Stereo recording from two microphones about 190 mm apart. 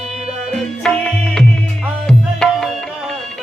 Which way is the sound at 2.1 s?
Centre (ahead or behind).